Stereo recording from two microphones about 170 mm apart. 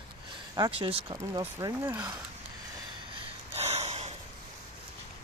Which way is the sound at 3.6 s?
40° right (ahead or behind).